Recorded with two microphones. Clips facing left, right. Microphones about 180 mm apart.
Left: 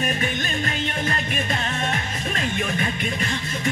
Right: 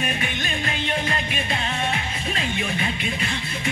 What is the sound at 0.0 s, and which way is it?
Music, 40° left (ahead or behind).